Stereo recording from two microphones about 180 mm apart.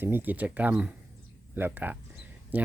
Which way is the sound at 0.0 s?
10° right (ahead or behind).